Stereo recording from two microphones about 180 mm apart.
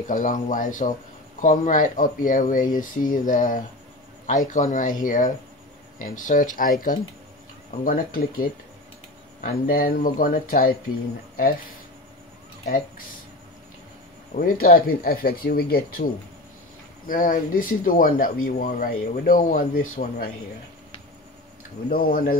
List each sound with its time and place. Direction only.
0.1 s speech: 45° left (ahead or behind)
12.6 s speech: 50° left (ahead or behind)
14.3 s speech: 55° left (ahead or behind)
17.1 s speech: 50° left (ahead or behind)
21.8 s speech: 55° left (ahead or behind)